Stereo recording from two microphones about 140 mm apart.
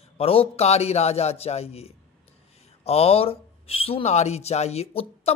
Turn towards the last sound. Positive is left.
turn(degrees=50)  # may be behind; listen again after turning